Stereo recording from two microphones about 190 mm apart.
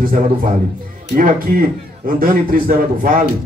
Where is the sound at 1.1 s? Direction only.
50° right (ahead or behind).